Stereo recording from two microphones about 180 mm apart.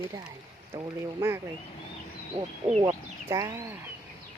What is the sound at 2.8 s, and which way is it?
Speech, 20° right (ahead or behind).